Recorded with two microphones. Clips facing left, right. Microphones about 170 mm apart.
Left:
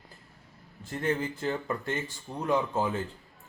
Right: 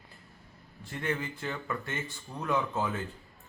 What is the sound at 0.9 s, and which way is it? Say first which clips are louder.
Speech: left 4 dB; 40° left (ahead or behind).